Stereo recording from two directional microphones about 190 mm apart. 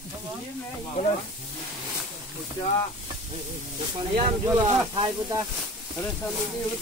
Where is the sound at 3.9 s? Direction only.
30° right (ahead or behind).